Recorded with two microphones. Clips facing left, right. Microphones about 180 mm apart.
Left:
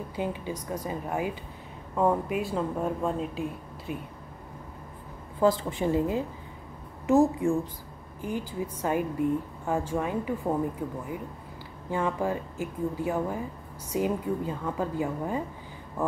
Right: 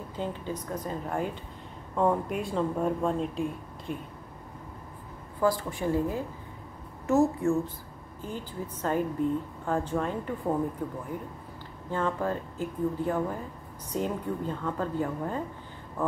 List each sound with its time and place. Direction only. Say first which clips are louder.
0.1 s a woman's voice: left 1 dB; 10° left (ahead or behind)
5.4 s a woman's voice: left 3 dB; 20° left (ahead or behind)